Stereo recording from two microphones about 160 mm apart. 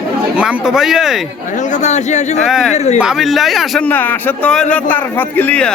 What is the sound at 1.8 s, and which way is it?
Speech, 45° left (ahead or behind).